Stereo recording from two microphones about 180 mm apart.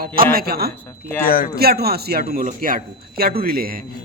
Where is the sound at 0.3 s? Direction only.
60° right (ahead or behind).